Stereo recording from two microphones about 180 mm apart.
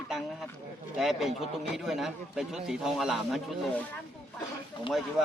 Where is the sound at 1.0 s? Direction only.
Centre (ahead or behind).